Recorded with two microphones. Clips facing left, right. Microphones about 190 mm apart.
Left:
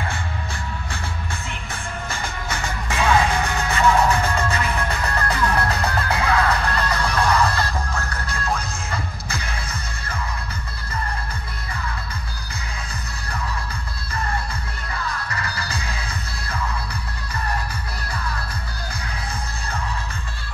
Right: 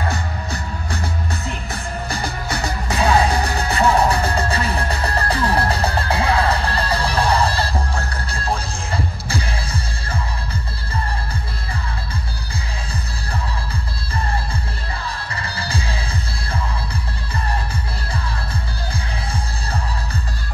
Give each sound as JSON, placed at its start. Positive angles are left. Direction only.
{"t": 0.1, "sound": "music", "side_deg": -40}
{"t": 15.0, "sound": "music", "side_deg": -30}